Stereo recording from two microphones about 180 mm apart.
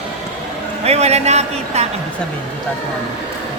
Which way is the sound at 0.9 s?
35° right (ahead or behind).